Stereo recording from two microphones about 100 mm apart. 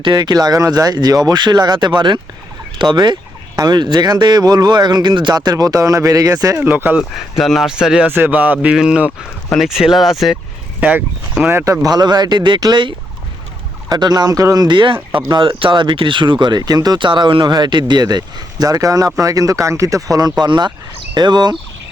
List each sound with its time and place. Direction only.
0.0 s speech: 45° right (ahead or behind)
6.6 s speech: 20° right (ahead or behind)
7.0 s speech: centre (ahead or behind)
8.1 s speech: 20° right (ahead or behind); by 10.3 s centre (ahead or behind)
10.8 s speech: 15° right (ahead or behind)
11.5 s speech: 30° right (ahead or behind)
13.9 s speech: 45° right (ahead or behind)
20.4 s speech: 45° right (ahead or behind)